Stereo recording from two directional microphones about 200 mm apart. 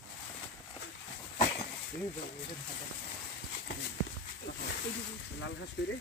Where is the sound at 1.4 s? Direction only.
20° left (ahead or behind).